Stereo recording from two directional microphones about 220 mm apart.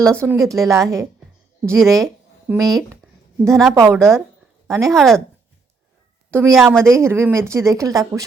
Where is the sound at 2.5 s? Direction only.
10° right (ahead or behind).